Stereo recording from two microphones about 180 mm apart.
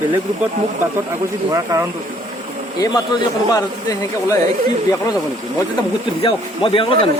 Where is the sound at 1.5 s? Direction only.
20° right (ahead or behind).